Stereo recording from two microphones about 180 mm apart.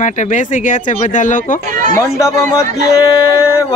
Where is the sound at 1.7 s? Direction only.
45° right (ahead or behind).